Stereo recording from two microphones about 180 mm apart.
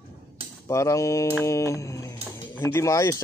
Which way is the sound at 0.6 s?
15° left (ahead or behind).